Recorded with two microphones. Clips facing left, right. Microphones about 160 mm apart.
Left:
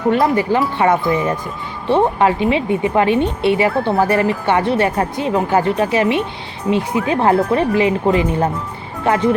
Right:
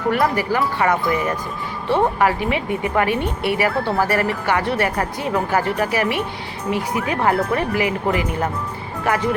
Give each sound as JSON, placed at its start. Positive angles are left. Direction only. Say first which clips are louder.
{"t": 0.1, "sound": "speech", "louder": "left 4 dB", "side_deg": 25}